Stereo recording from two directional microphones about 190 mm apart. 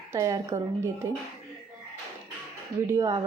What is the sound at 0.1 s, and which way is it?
Speech, 15° right (ahead or behind).